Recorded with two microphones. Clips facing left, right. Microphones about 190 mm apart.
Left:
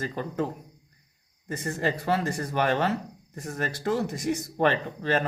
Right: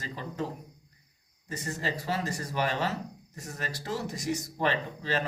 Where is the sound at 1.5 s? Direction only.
55° left (ahead or behind).